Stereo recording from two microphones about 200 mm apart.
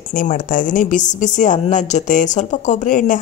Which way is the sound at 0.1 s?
40° left (ahead or behind).